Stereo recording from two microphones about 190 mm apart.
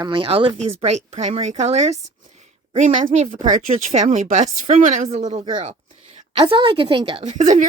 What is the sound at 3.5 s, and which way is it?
A woman's voice, 40° right (ahead or behind).